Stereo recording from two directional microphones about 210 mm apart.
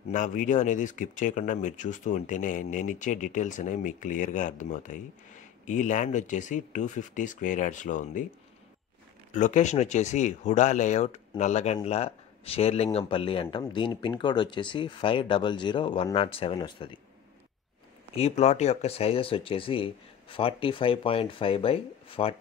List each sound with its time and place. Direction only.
0.1 s speech: 40° left (ahead or behind)
9.3 s speech: 35° left (ahead or behind)
18.1 s speech: 30° left (ahead or behind)